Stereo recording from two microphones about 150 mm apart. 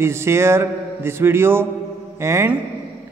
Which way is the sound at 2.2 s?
20° right (ahead or behind).